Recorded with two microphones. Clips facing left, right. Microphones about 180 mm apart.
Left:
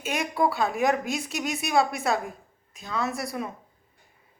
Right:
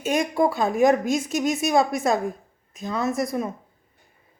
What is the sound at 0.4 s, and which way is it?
A woman's voice, 45° right (ahead or behind).